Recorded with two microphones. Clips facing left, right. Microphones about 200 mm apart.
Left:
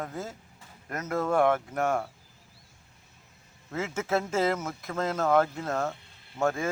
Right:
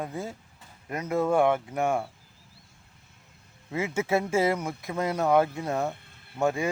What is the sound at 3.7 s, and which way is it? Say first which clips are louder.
Speech: right 3 dB; 10° right (ahead or behind).